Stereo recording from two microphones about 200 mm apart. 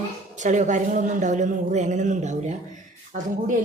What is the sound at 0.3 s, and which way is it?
A woman's voice, 35° right (ahead or behind).